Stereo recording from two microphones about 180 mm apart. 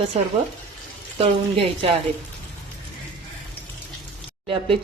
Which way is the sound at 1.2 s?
30° right (ahead or behind).